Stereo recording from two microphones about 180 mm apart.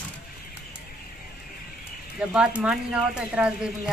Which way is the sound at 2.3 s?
5° right (ahead or behind).